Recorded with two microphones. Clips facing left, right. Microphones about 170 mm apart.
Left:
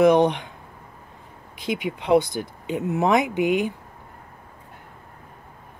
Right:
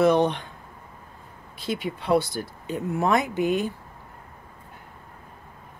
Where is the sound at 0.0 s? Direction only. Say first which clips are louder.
Left 3 dB; 15° left (ahead or behind).